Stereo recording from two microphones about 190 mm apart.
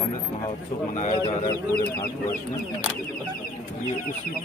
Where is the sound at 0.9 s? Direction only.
35° left (ahead or behind).